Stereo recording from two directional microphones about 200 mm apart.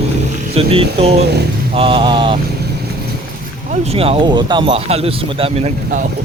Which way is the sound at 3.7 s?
30° right (ahead or behind).